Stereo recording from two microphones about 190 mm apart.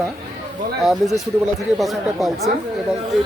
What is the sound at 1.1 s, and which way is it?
Speech, centre (ahead or behind).